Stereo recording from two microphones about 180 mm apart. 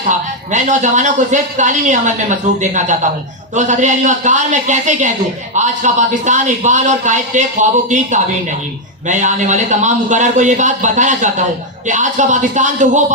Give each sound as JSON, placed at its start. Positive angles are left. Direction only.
{"t": 0.1, "sound": "a man's voice", "side_deg": -40}